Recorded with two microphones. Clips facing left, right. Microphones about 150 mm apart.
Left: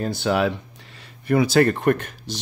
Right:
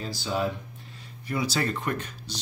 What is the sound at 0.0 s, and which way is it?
Speech, 60° left (ahead or behind).